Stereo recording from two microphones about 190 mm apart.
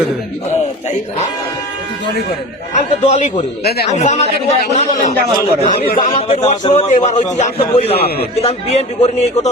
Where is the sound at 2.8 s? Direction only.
40° left (ahead or behind).